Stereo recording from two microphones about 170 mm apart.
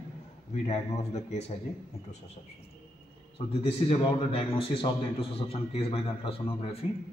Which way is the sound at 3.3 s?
35° left (ahead or behind).